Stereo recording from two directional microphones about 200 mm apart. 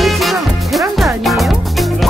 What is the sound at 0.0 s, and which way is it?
Music, centre (ahead or behind).